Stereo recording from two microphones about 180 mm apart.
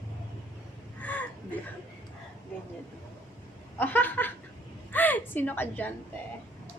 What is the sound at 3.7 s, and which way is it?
A woman's voice, 10° left (ahead or behind).